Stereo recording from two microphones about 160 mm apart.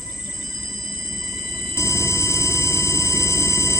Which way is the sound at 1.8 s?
20° left (ahead or behind).